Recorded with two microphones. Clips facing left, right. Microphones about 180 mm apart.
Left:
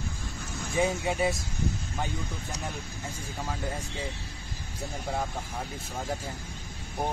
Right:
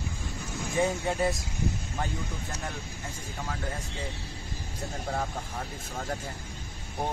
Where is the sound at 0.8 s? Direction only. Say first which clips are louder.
Even; 15° left (ahead or behind).